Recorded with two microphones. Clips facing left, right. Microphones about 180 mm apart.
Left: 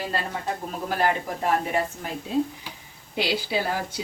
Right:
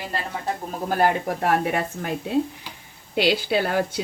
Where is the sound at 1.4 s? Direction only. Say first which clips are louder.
Right 1 dB; 65° right (ahead or behind).